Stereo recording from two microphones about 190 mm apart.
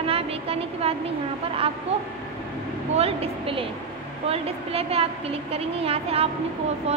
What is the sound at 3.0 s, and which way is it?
A woman's voice, 30° right (ahead or behind).